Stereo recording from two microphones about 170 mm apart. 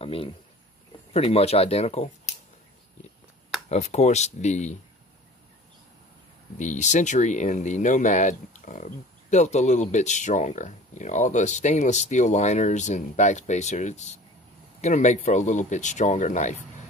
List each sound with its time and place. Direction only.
0.0 s speech: 35° left (ahead or behind)
3.6 s speech: 40° left (ahead or behind)
6.6 s speech: 45° left (ahead or behind)